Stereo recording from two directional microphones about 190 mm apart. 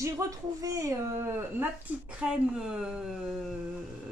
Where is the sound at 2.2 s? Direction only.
5° right (ahead or behind).